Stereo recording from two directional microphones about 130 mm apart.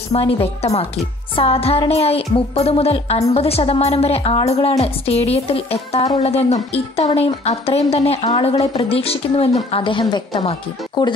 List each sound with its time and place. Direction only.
0.1 s speech: 50° left (ahead or behind)